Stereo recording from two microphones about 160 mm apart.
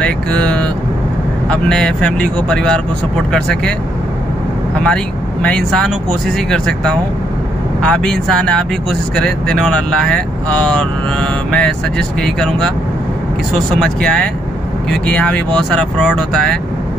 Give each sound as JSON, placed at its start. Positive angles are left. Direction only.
{"t": 0.0, "sound": "vehicle", "side_deg": 5}
{"t": 1.5, "sound": "speech", "side_deg": 5}
{"t": 4.8, "sound": "speech", "side_deg": 5}
{"t": 13.7, "sound": "speech", "side_deg": 5}